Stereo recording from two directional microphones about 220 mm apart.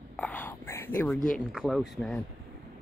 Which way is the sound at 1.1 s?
35° left (ahead or behind).